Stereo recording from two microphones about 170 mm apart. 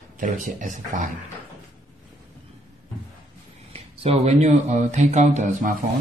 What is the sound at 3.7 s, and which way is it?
Speech, 35° right (ahead or behind).